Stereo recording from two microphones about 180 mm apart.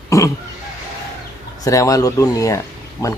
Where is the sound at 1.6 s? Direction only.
20° left (ahead or behind).